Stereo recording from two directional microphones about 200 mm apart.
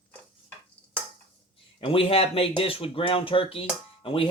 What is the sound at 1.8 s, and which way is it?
Speech, 25° left (ahead or behind).